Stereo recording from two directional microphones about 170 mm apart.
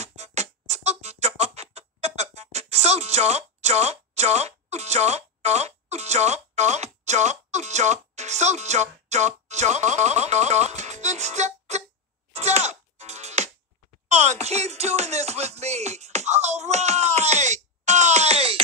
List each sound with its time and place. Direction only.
0.0 s music: 40° right (ahead or behind)